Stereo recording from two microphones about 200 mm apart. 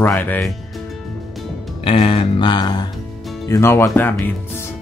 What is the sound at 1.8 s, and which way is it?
Speech, 30° left (ahead or behind).